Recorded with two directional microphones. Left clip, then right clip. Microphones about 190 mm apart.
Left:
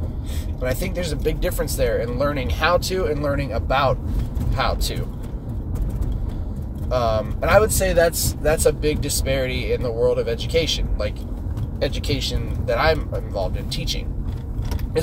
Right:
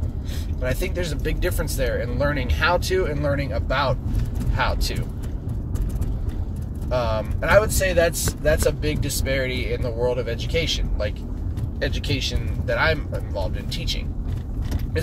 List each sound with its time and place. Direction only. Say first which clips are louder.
0.6 s speech: left 1 dB; 15° left (ahead or behind)
6.9 s speech: left 3 dB; 15° left (ahead or behind)